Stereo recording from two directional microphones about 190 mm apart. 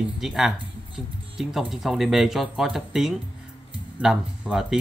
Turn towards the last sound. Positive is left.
turn(degrees=-5)  # may be behind; listen again after turning